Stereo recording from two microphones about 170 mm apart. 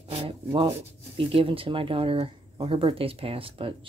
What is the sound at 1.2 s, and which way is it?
Speech, 30° right (ahead or behind).